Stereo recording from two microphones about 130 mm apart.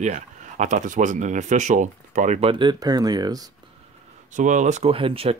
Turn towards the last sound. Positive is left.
turn(degrees=-45)  # may be behind; listen again after turning